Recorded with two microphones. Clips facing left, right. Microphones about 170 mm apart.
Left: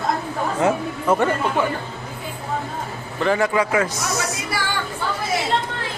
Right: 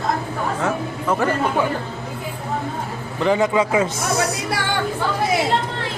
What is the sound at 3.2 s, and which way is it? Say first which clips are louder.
Speech: right 2 dB; 20° right (ahead or behind).